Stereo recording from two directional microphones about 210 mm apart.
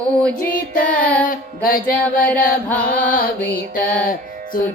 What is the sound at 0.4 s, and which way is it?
Music, 40° left (ahead or behind).